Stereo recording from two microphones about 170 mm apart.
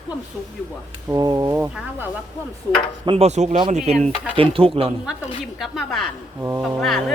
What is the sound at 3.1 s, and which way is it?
Speech, 40° right (ahead or behind).